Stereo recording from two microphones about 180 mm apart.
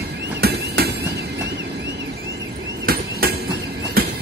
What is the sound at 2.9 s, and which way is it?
Hammer, 55° right (ahead or behind).